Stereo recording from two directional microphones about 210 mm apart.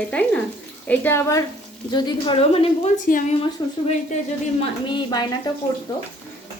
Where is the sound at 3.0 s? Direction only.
40° left (ahead or behind).